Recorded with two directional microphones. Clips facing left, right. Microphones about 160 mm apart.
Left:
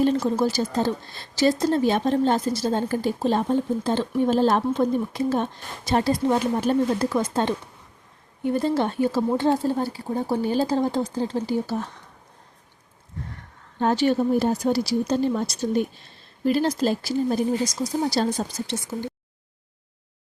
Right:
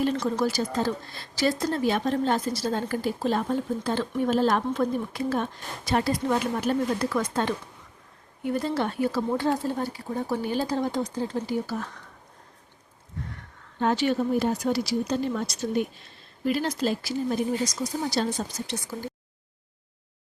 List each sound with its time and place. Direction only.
0.3 s speech: 25° left (ahead or behind)
13.7 s speech: 35° left (ahead or behind)